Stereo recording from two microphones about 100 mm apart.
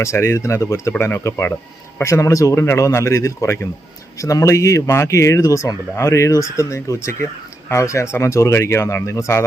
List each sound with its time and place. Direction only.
0.0 s speech: 25° left (ahead or behind)